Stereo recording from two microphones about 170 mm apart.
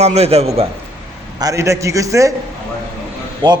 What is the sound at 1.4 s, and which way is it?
Speech, 20° right (ahead or behind).